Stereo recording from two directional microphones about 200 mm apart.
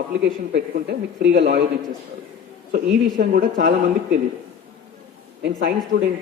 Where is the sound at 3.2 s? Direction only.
45° right (ahead or behind).